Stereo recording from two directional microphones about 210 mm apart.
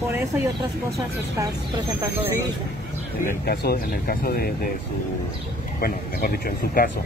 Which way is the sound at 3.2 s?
50° left (ahead or behind).